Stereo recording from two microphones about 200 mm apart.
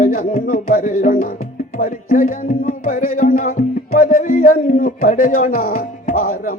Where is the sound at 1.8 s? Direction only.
45° left (ahead or behind).